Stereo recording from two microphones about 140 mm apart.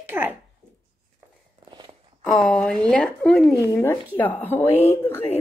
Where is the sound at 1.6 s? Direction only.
30° right (ahead or behind).